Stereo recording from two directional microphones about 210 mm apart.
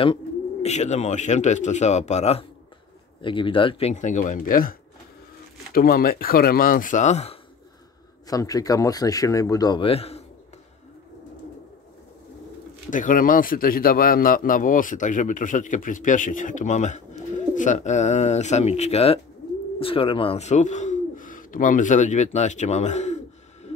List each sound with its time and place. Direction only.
0.0 s a man's voice: 25° left (ahead or behind)
8.3 s speech: 15° left (ahead or behind)
12.9 s a man's voice: 40° left (ahead or behind)